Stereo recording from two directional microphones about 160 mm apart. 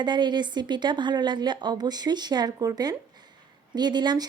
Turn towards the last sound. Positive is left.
turn(degrees=-25)  # may be behind; listen again after turning